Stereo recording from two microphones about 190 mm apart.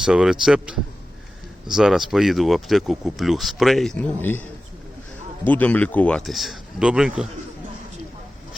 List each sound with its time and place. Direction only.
0.0 s speech: 5° right (ahead or behind)
5.5 s speech: 10° left (ahead or behind)